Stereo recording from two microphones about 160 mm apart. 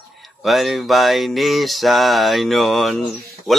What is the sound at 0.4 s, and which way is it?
Speech, centre (ahead or behind).